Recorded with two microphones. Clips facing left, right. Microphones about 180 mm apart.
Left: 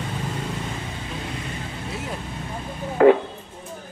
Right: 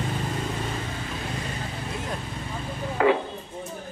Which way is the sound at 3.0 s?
45° left (ahead or behind).